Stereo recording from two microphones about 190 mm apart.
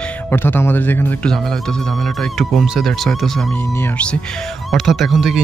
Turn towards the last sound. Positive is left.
turn(degrees=0)  # may be behind; listen again after turning